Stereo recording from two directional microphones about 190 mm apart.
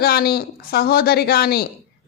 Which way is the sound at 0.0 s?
55° left (ahead or behind).